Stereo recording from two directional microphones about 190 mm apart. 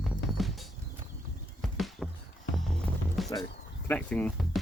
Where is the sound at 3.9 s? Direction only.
5° left (ahead or behind).